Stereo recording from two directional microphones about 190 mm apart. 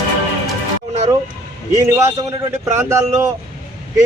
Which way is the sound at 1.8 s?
15° right (ahead or behind).